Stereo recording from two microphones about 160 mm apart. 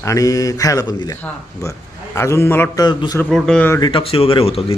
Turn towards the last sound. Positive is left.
turn(degrees=35)  # may be behind; listen again after turning